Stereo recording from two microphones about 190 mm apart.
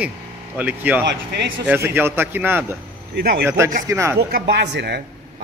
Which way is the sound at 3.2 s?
55° right (ahead or behind).